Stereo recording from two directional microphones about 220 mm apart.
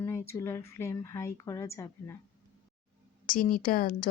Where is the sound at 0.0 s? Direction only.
10° left (ahead or behind).